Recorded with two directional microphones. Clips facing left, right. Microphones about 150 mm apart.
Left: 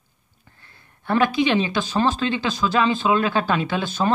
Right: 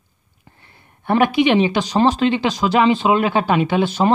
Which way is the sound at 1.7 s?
90° right.